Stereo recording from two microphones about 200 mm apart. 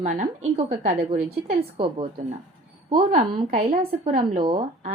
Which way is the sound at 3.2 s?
40° right (ahead or behind).